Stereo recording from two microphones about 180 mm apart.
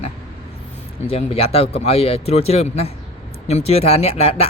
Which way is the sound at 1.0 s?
35° left (ahead or behind).